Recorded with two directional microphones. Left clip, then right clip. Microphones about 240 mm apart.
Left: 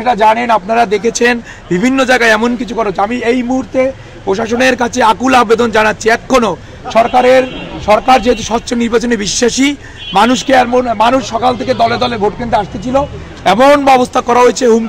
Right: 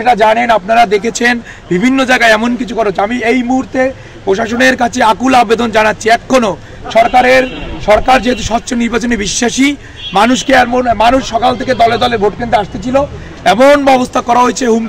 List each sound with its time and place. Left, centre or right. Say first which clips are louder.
0.0 s speech: right 1 dB; centre